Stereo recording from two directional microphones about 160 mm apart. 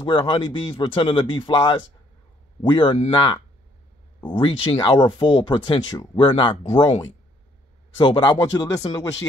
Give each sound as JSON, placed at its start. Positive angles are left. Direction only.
{"t": 0.0, "sound": "speech", "side_deg": 30}